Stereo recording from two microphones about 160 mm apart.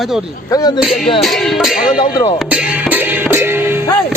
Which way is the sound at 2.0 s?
30° left (ahead or behind).